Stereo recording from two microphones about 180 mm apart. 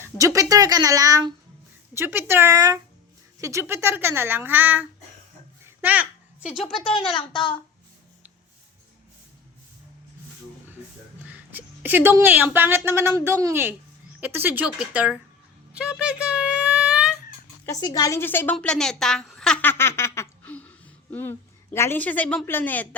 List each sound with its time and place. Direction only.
0.0 s speech: 15° right (ahead or behind); by 6.7 s centre (ahead or behind)
6.7 s speech: 30° left (ahead or behind)
11.3 s speech: 10° right (ahead or behind)
15.7 s a sound: 5° right (ahead or behind)
17.7 s a woman's voice: 20° left (ahead or behind)